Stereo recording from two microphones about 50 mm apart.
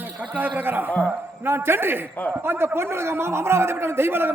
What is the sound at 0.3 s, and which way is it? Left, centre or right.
A man's voice, right.